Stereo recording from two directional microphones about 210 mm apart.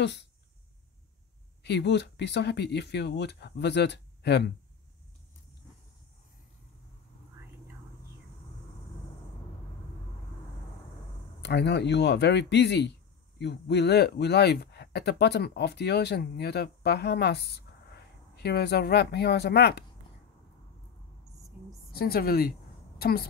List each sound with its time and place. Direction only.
0.0 s speech: 55° left (ahead or behind)
1.6 s speech: 55° left (ahead or behind)
11.4 s speech: 55° left (ahead or behind)
21.9 s speech: 45° left (ahead or behind)